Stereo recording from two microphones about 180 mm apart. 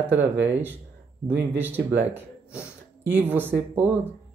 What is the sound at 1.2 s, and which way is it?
Speech, 10° right (ahead or behind).